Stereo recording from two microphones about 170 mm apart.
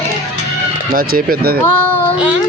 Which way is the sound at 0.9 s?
60° right (ahead or behind).